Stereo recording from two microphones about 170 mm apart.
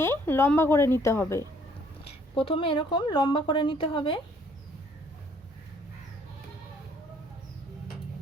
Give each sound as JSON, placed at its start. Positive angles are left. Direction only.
{"t": 0.0, "sound": "speech", "side_deg": 15}
{"t": 2.0, "sound": "speech", "side_deg": 35}